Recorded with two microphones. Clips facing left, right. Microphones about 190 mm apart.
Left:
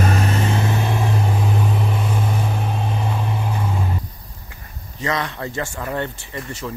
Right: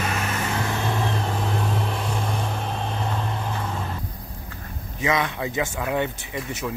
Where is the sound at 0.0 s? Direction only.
35° left (ahead or behind); by 3.8 s 10° left (ahead or behind).